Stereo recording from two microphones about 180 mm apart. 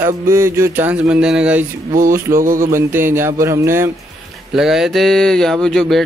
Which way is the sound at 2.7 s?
15° right (ahead or behind).